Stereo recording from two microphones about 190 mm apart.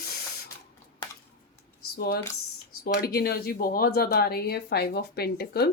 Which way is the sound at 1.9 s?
55° left (ahead or behind).